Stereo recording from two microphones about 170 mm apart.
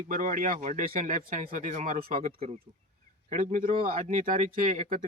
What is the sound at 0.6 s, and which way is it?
Speech, 45° right (ahead or behind).